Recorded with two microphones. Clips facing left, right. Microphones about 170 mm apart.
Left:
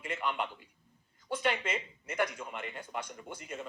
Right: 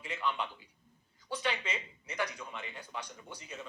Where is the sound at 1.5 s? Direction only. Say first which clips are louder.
Left 4 dB; 50° left (ahead or behind).